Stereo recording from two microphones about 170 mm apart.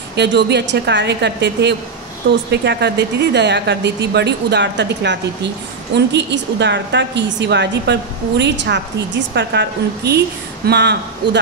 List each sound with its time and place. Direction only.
0.1 s a woman's voice: 85° right